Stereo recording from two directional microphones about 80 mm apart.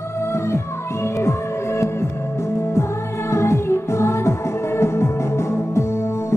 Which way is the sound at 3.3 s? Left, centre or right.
Left.